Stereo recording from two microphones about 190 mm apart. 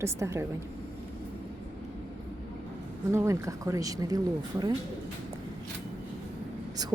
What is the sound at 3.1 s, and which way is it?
Speech, 15° right (ahead or behind).